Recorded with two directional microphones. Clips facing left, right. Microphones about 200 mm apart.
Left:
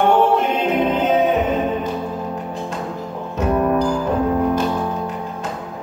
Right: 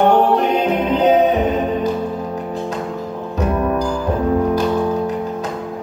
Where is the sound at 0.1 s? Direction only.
40° right (ahead or behind).